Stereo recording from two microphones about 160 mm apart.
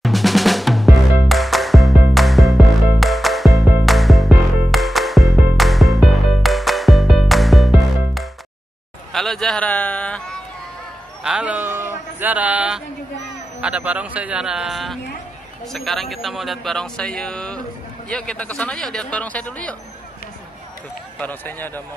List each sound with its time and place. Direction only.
0.0 s music: centre (ahead or behind)
9.1 s a sound: centre (ahead or behind)
11.2 s a man's voice: 5° right (ahead or behind); by 19.7 s 10° left (ahead or behind)
21.2 s speech: 10° left (ahead or behind)